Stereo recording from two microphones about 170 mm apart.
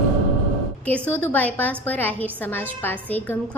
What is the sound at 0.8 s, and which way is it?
A woman's voice, 10° left (ahead or behind).